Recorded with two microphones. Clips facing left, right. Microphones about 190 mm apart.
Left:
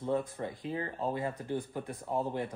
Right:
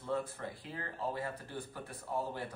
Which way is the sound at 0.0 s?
20° left (ahead or behind).